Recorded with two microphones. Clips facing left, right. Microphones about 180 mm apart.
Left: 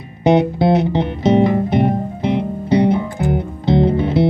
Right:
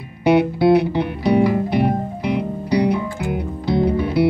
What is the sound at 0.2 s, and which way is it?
Music, 20° left (ahead or behind).